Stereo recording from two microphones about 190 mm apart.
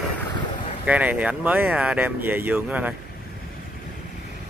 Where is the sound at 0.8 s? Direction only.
5° right (ahead or behind).